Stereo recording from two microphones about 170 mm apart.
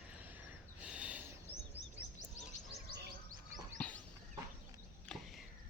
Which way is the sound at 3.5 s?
10° left (ahead or behind).